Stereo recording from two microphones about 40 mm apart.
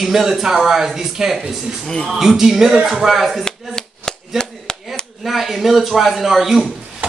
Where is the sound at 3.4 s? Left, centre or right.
Centre.